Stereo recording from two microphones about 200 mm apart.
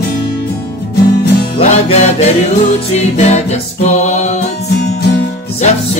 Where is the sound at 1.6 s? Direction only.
35° left (ahead or behind).